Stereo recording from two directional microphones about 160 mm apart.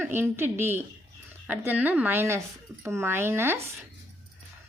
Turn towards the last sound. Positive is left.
turn(degrees=-15)  # may be behind; listen again after turning